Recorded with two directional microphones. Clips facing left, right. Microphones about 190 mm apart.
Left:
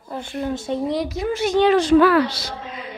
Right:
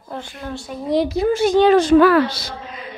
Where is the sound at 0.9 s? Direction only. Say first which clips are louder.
Right 6 dB; 30° right (ahead or behind); by 2.2 s 45° right (ahead or behind).